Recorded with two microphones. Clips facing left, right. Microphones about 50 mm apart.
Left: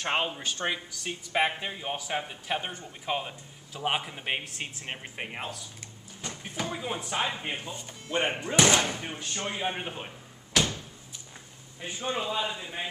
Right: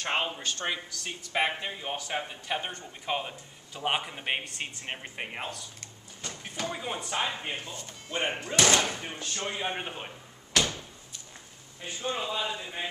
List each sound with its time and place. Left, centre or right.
0.0 s speech: centre
11.8 s a man's voice: centre